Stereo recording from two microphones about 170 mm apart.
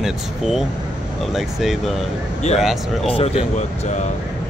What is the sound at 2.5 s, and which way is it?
Speech, 40° left (ahead or behind).